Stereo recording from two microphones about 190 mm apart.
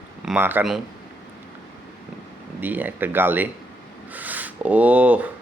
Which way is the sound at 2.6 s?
10° right (ahead or behind).